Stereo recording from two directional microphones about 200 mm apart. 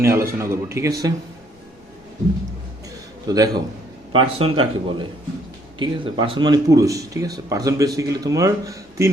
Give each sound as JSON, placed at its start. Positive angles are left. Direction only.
{"t": 0.0, "sound": "speech", "side_deg": -15}
{"t": 3.2, "sound": "speech", "side_deg": -20}